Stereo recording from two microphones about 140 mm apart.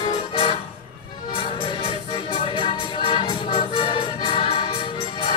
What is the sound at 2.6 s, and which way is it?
Music, 40° left (ahead or behind).